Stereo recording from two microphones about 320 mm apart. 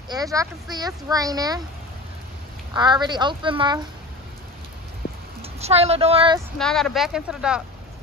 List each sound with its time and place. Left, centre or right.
0.1 s speech: centre
2.7 s speech: centre
5.4 s speech: centre
6.6 s speech: centre